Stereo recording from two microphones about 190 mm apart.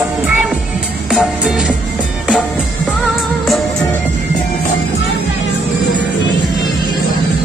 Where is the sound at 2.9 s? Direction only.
Centre (ahead or behind).